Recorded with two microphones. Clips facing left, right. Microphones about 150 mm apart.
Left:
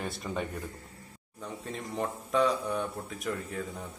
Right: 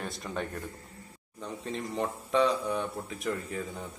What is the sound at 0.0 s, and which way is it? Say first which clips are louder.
Speech: left 1 dB; centre (ahead or behind).